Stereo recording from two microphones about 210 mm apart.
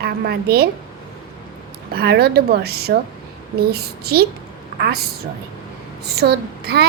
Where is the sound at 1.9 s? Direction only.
50° right (ahead or behind).